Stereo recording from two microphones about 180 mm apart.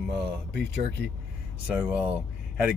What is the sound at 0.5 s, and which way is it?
Speech, 70° right (ahead or behind).